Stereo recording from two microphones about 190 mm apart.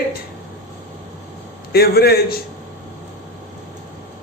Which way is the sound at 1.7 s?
55° left (ahead or behind).